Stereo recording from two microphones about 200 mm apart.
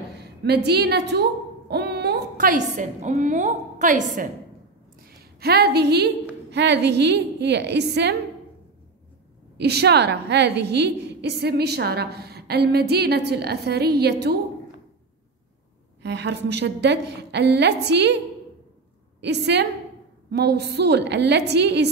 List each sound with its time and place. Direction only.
0.2 s a woman's voice: 55° right (ahead or behind); by 4.3 s 40° right (ahead or behind)
5.0 s a woman's voice: 50° right (ahead or behind)
9.6 s a woman's voice: 55° right (ahead or behind)
16.0 s a woman's voice: 60° right (ahead or behind)
19.2 s a woman's voice: 55° right (ahead or behind)